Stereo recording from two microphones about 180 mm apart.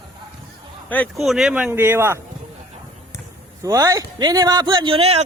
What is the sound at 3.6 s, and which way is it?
A man's voice, 20° right (ahead or behind).